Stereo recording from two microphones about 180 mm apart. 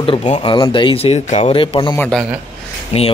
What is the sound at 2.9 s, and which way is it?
Speech, 35° left (ahead or behind).